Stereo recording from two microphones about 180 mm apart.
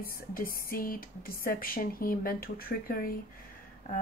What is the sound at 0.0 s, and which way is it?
Speech, 55° left (ahead or behind).